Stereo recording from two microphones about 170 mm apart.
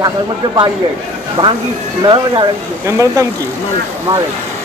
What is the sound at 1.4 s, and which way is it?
Speech, 15° right (ahead or behind).